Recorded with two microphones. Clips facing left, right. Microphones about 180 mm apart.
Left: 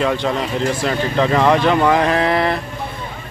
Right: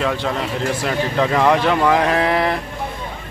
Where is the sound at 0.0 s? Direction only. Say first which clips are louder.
Left 2 dB; centre (ahead or behind).